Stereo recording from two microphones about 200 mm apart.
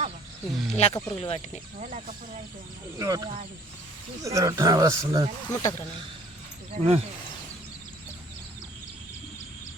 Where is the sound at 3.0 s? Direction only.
15° right (ahead or behind).